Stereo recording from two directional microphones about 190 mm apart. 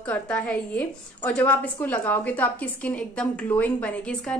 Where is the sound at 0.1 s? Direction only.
10° left (ahead or behind).